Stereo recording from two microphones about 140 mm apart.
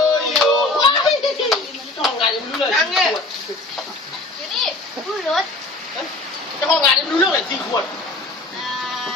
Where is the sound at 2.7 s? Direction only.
Centre (ahead or behind).